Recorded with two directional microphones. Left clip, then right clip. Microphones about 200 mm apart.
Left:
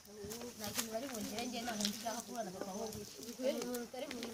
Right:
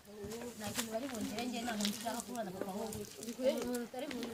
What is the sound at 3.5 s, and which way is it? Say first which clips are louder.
Speech: right 2 dB; 45° left (ahead or behind).